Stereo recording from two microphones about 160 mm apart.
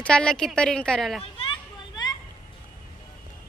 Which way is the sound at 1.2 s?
35° left (ahead or behind).